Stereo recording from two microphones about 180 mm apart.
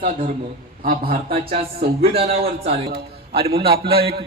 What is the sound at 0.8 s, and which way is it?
Speech, 55° right (ahead or behind).